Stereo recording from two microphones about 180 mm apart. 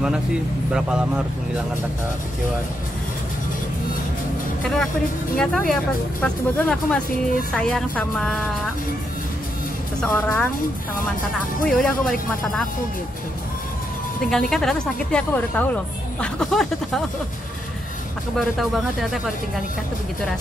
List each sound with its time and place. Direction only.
0.7 s speech: 5° right (ahead or behind)
5.4 s speech: 5° left (ahead or behind)
10.1 s speech: 15° left (ahead or behind)
11.6 s speech: centre (ahead or behind)
14.5 s speech: centre (ahead or behind)
18.3 s speech: centre (ahead or behind)